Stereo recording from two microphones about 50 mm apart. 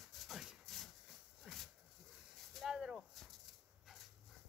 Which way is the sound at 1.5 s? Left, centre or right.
Centre.